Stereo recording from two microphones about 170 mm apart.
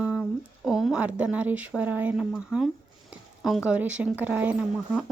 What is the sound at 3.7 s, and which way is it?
A woman's voice, 5° right (ahead or behind).